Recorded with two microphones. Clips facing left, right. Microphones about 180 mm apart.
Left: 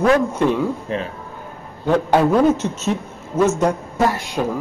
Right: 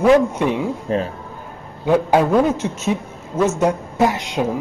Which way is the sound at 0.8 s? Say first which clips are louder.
Right 4 dB; 40° right (ahead or behind).